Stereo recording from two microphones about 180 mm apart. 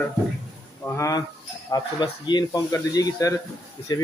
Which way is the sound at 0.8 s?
15° left (ahead or behind).